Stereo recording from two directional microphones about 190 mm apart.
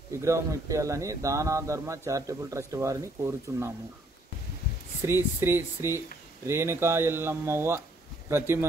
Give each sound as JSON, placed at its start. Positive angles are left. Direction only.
{"t": 0.2, "sound": "speech", "side_deg": -15}
{"t": 5.0, "sound": "speech", "side_deg": -10}